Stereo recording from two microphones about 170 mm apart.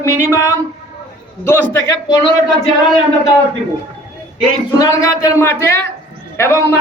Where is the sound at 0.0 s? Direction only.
15° left (ahead or behind).